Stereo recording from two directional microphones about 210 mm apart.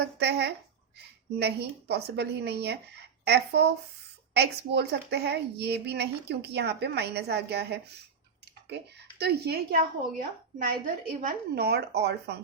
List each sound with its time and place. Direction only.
0.0 s a woman's voice: 50° right (ahead or behind)
9.0 s a woman's voice: 50° right (ahead or behind)